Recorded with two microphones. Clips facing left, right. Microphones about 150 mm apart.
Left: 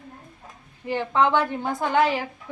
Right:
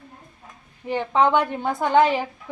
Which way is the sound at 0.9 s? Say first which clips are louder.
Right 2 dB; 15° right (ahead or behind).